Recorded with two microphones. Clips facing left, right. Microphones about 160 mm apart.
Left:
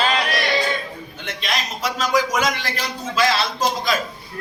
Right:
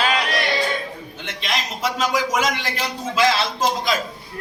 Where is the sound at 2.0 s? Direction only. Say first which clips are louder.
Left 2 dB; 25° right (ahead or behind).